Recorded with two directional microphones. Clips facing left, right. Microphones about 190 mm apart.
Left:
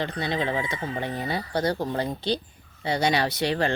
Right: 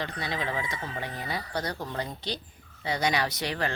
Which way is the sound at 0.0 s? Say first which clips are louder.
Left 5 dB; 30° left (ahead or behind).